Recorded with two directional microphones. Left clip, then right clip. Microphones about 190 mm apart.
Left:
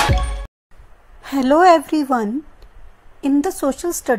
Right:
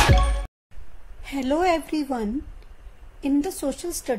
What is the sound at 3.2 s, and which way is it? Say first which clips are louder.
Speech: left 6 dB; 15° left (ahead or behind).